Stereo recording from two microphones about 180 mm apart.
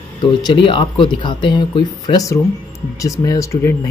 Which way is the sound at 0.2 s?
25° left (ahead or behind).